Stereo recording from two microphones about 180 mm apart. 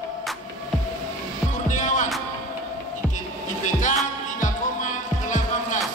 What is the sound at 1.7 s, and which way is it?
Music, 45° left (ahead or behind).